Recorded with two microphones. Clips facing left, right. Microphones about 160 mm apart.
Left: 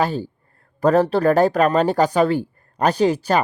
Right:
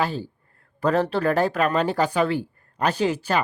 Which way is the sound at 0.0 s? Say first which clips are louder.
Left 4 dB; 45° left (ahead or behind).